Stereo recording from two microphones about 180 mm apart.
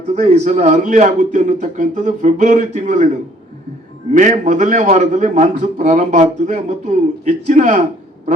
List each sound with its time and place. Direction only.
0.1 s a man's voice: 40° right (ahead or behind)
4.1 s a man's voice: 45° right (ahead or behind)